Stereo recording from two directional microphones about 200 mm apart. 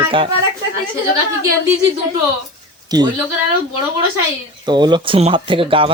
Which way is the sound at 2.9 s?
20° right (ahead or behind).